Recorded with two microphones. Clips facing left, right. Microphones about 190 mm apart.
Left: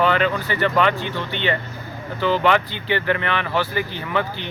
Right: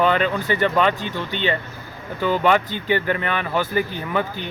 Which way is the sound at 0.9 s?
45° right (ahead or behind).